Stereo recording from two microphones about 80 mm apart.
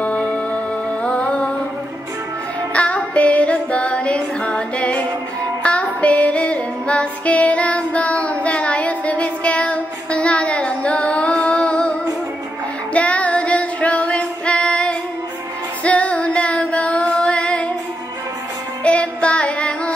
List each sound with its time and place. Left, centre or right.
0.0 s music: centre
2.7 s female singing: centre
12.9 s female singing: centre
15.8 s music: centre
18.9 s music: centre